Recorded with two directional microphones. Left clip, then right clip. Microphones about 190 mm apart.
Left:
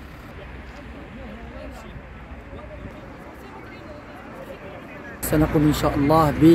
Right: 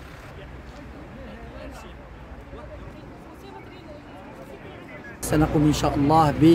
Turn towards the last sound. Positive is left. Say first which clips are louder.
# left 1 dB
turn(degrees=-25)  # may be behind; listen again after turning